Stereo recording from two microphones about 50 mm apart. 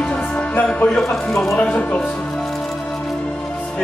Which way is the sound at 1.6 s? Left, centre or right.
Left.